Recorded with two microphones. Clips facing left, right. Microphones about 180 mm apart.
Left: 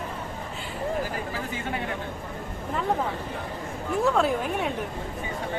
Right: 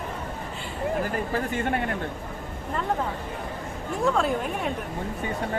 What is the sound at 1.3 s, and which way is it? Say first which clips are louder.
Speech: right 5 dB; 55° right (ahead or behind).